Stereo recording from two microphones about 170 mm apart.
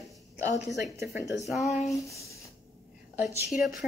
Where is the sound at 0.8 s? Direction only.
15° right (ahead or behind).